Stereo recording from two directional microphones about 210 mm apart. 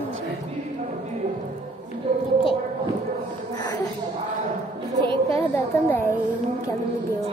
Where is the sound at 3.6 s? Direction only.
20° left (ahead or behind).